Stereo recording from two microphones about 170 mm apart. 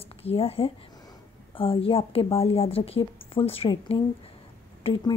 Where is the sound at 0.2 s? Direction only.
35° left (ahead or behind).